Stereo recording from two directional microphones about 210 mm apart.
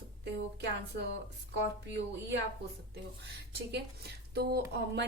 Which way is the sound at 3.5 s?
50° right (ahead or behind).